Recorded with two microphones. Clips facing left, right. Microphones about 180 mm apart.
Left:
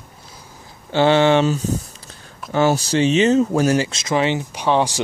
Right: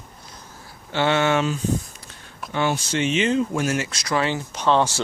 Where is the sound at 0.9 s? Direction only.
30° left (ahead or behind).